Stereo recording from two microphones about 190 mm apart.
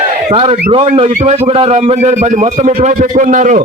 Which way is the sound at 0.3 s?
35° right (ahead or behind).